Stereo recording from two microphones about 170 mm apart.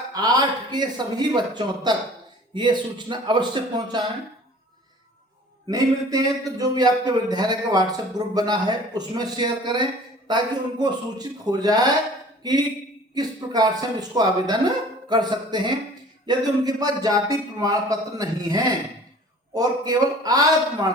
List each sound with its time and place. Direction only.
0.1 s a man's voice: 25° right (ahead or behind)
5.7 s a man's voice: 20° right (ahead or behind)